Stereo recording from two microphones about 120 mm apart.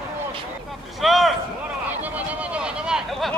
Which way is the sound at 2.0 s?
10° right (ahead or behind).